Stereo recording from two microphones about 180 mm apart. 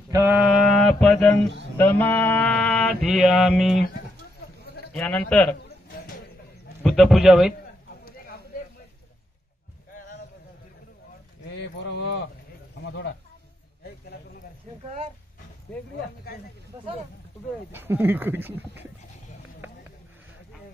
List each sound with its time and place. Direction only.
0.1 s mantra: 10° right (ahead or behind)
4.9 s a man's voice: 5° left (ahead or behind)
5.9 s a sound: 50° left (ahead or behind)
6.8 s speech: centre (ahead or behind)
11.5 s a sound: 80° left
12.8 s music: 75° left (ahead or behind)
15.7 s mantra: 5° left (ahead or behind)
17.7 s speech: 10° right (ahead or behind)